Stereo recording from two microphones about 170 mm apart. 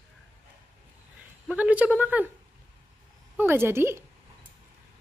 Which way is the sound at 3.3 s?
15° right (ahead or behind).